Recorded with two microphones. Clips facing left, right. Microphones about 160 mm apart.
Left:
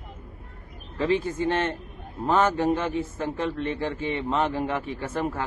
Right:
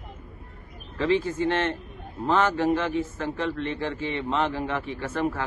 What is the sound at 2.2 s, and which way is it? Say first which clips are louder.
A man's voice: left 1 dB; 15° left (ahead or behind).